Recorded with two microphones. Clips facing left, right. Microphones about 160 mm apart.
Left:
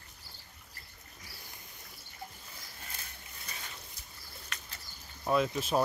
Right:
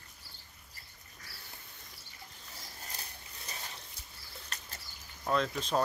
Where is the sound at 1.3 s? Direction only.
15° left (ahead or behind).